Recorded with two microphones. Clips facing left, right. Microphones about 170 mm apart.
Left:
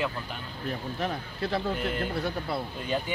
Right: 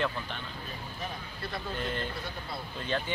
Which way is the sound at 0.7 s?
70° left (ahead or behind).